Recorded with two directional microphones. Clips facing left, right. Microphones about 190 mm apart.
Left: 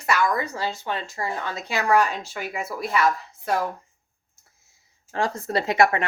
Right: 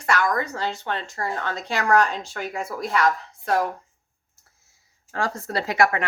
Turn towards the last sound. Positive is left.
turn(degrees=25)  # may be behind; listen again after turning